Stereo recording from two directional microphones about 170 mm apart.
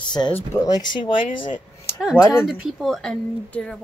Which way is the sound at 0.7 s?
25° left (ahead or behind).